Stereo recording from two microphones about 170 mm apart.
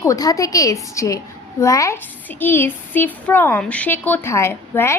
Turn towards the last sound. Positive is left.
turn(degrees=15)  # may be behind; listen again after turning